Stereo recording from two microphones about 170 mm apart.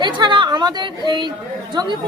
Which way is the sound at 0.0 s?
25° right (ahead or behind).